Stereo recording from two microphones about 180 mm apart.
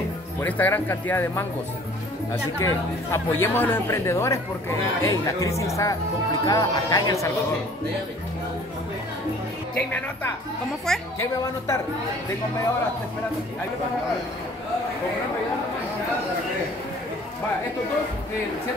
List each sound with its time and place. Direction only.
0.4 s speech: 10° left (ahead or behind)
9.8 s speech: 10° left (ahead or behind)